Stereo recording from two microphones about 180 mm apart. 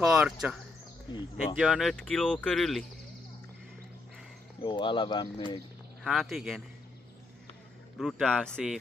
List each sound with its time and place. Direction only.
0.0 s speech: 5° right (ahead or behind)
1.6 s speech: centre (ahead or behind)
4.6 s speech: 25° left (ahead or behind)
6.0 s speech: centre (ahead or behind)
8.0 s speech: centre (ahead or behind)